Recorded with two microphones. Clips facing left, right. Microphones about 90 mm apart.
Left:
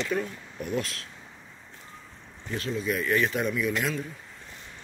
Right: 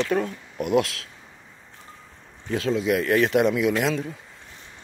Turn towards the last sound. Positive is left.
turn(degrees=-80)